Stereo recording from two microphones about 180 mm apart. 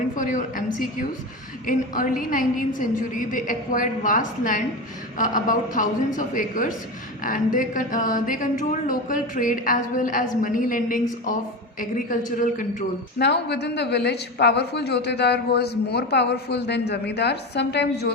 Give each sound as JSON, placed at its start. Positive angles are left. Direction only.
{"t": 0.2, "sound": "a woman's voice", "side_deg": 45}
{"t": 13.1, "sound": "a woman's voice", "side_deg": 70}